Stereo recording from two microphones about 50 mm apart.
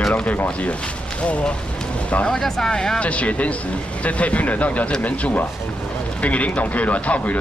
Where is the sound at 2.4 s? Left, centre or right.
Centre.